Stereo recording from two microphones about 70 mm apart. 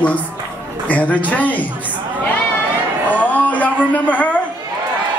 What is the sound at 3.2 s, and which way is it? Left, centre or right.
Music, left.